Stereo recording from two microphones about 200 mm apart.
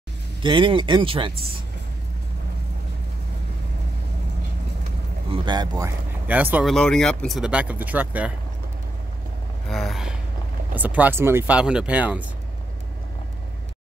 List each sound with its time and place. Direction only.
0.4 s speech: 25° right (ahead or behind)
5.3 s speech: 25° right (ahead or behind)
9.7 s gasp: centre (ahead or behind)
10.7 s speech: 10° right (ahead or behind)